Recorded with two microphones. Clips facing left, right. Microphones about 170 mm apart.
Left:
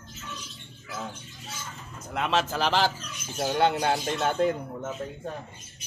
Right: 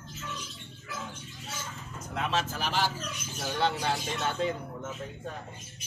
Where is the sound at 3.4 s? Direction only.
55° left (ahead or behind).